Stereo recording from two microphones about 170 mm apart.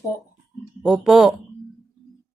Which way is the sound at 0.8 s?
5° right (ahead or behind).